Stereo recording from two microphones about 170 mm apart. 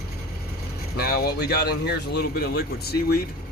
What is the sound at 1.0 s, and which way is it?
Speech, 65° left (ahead or behind).